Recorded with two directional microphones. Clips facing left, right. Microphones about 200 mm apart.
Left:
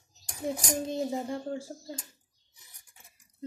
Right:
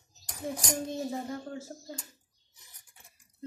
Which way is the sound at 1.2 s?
25° left (ahead or behind).